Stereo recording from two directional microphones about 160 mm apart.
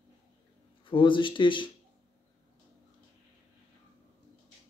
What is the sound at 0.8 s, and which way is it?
Speech, 30° left (ahead or behind).